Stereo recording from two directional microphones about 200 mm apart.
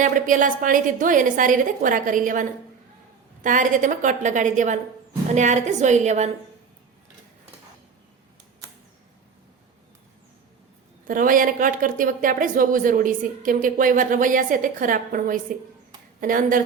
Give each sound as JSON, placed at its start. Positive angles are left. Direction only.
{"t": 0.0, "sound": "a woman's voice", "side_deg": -40}
{"t": 11.1, "sound": "speech", "side_deg": -45}